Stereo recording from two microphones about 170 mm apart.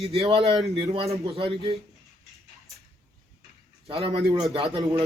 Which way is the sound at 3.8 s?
35° right (ahead or behind).